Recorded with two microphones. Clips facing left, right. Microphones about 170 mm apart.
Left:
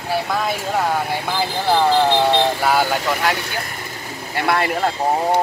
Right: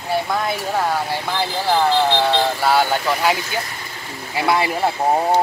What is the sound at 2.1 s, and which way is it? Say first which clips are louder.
Music: left 2 dB; 15° left (ahead or behind).